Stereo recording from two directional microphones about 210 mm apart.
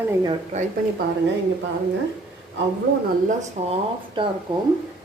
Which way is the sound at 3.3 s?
30° right (ahead or behind).